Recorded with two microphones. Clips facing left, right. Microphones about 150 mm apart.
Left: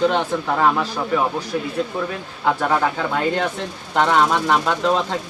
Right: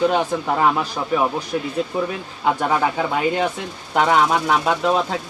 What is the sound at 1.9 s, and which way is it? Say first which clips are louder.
Speech: right 2 dB; 15° right (ahead or behind).